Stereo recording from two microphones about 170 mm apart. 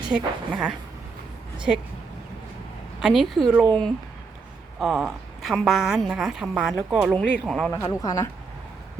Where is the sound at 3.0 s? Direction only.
Centre (ahead or behind).